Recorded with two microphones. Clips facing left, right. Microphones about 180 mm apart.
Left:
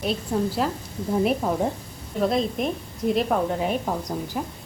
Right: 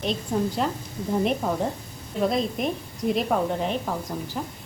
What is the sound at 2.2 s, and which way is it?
Speech, centre (ahead or behind).